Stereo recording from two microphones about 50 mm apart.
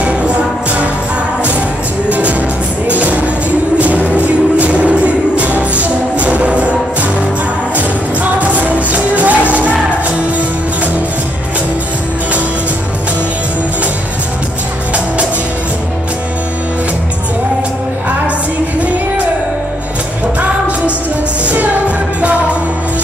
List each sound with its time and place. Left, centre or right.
0.0 s music: right
2.0 s music: right
7.7 s music: right